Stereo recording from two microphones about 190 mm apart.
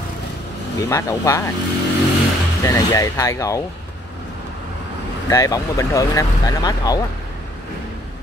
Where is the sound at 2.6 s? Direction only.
15° left (ahead or behind).